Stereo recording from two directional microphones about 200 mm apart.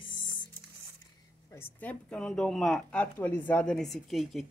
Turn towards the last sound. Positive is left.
turn(degrees=0)  # may be behind; listen again after turning